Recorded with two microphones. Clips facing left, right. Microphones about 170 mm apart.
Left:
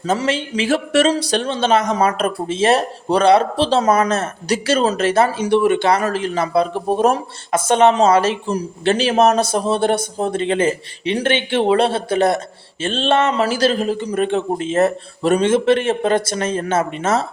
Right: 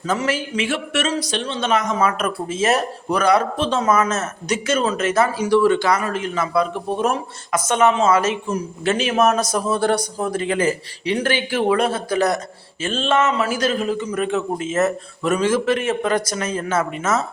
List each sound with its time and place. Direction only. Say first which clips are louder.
0.0 s speech: left 3 dB; 30° left (ahead or behind)
6.0 s speech: left 4 dB; 35° left (ahead or behind)